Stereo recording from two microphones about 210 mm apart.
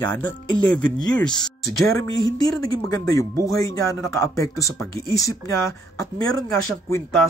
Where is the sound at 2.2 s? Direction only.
15° left (ahead or behind).